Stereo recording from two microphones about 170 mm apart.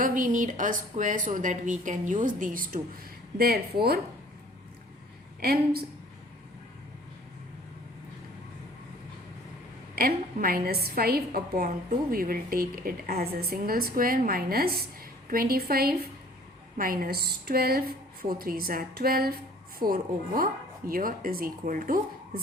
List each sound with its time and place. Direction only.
0.0 s a woman's voice: 50° right (ahead or behind)
3.3 s a woman's voice: 65° right (ahead or behind)
5.4 s a woman's voice: 65° right (ahead or behind)
9.9 s a woman's voice: 60° right (ahead or behind)